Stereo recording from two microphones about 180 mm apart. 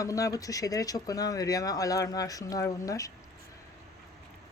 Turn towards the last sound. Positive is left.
turn(degrees=20)  # may be behind; listen again after turning